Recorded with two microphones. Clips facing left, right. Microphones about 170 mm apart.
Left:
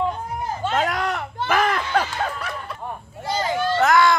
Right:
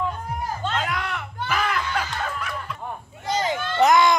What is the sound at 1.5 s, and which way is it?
Snicker, 45° left (ahead or behind).